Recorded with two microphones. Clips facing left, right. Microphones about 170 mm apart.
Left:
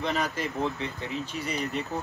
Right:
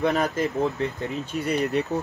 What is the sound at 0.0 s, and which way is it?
Speech, 50° right (ahead or behind).